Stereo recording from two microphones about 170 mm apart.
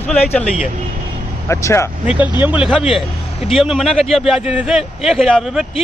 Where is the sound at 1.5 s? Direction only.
15° left (ahead or behind).